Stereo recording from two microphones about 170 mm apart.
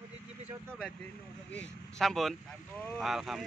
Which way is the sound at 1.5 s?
5° left (ahead or behind).